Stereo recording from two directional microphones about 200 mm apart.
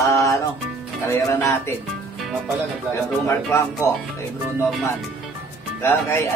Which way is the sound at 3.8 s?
15° left (ahead or behind).